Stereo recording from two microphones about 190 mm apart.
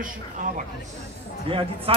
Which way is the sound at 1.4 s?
30° right (ahead or behind).